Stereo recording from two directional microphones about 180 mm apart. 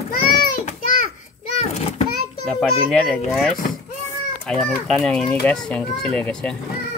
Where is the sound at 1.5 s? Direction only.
35° left (ahead or behind).